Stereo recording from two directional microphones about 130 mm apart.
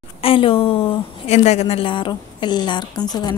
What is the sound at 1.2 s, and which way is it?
A woman's voice, 60° left (ahead or behind).